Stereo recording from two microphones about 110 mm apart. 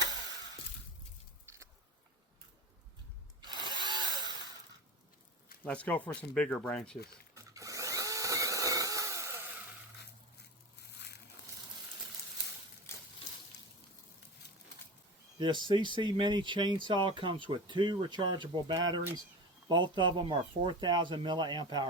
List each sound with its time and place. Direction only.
3.4 s wood: 40° right (ahead or behind)
5.6 s speech: 15° left (ahead or behind)
7.3 s tools: 30° right (ahead or behind)
15.6 s speech: 45° right (ahead or behind)